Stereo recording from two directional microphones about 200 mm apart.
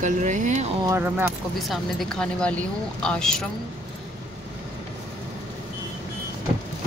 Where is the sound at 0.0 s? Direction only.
40° right (ahead or behind).